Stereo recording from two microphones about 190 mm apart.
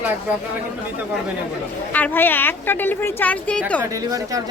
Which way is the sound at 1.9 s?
10° left (ahead or behind).